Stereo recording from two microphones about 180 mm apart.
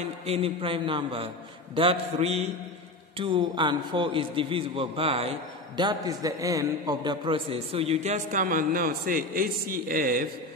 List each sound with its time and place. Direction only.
0.3 s a man's voice: 30° right (ahead or behind); by 10.2 s 55° right (ahead or behind)